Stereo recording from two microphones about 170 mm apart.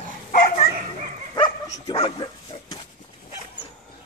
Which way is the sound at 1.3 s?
25° left (ahead or behind).